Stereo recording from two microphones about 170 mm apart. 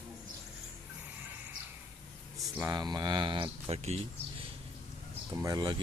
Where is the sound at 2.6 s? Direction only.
25° right (ahead or behind).